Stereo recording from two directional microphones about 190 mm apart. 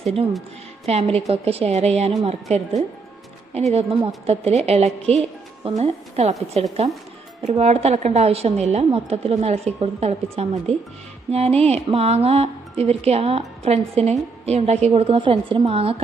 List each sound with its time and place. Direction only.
0.0 s speech: 30° right (ahead or behind)